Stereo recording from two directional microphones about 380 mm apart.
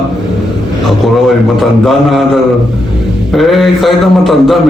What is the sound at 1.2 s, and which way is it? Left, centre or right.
A man's voice, centre.